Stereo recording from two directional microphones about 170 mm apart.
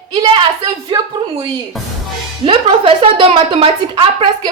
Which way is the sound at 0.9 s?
30° right (ahead or behind).